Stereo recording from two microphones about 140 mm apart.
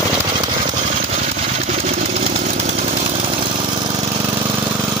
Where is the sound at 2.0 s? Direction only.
45° right (ahead or behind); by 4.7 s 30° right (ahead or behind).